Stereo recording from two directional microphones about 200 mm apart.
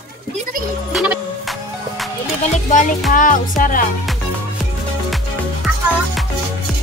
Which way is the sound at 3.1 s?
40° left (ahead or behind).